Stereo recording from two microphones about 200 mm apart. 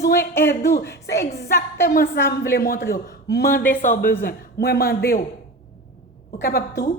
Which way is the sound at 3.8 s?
45° left (ahead or behind).